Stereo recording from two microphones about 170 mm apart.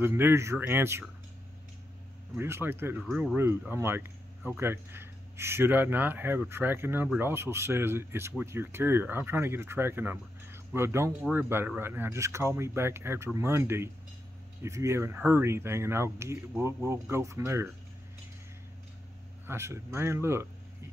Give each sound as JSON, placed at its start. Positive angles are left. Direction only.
{"t": 0.0, "sound": "speech", "side_deg": -15}
{"t": 2.3, "sound": "speech", "side_deg": -15}
{"t": 19.4, "sound": "speech", "side_deg": -15}